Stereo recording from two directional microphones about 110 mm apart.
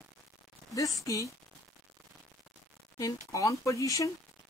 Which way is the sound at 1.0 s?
30° left (ahead or behind).